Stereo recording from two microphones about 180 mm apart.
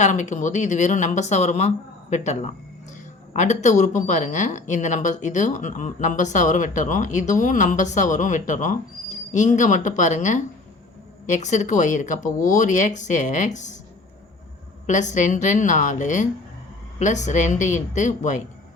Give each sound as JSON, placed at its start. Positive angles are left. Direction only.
{"t": 0.0, "sound": "speech", "side_deg": 40}
{"t": 14.8, "sound": "speech", "side_deg": 40}